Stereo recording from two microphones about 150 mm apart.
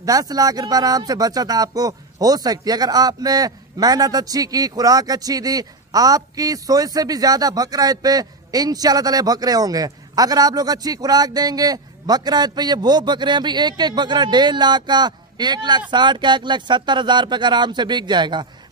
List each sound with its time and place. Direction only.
0.0 s speech: 25° right (ahead or behind)